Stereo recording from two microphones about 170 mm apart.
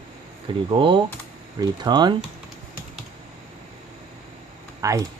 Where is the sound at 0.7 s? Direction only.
30° right (ahead or behind).